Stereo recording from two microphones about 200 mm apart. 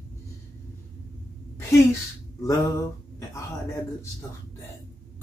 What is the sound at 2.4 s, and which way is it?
Speech, 15° left (ahead or behind).